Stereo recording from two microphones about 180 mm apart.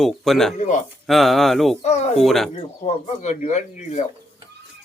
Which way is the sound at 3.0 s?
40° left (ahead or behind).